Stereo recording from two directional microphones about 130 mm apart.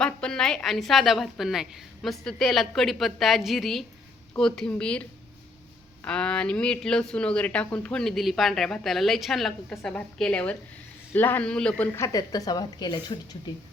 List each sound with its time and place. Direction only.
0.0 s a woman's voice: 5° left (ahead or behind)
6.1 s a woman's voice: 5° left (ahead or behind)
11.9 s a woman's voice: 25° left (ahead or behind)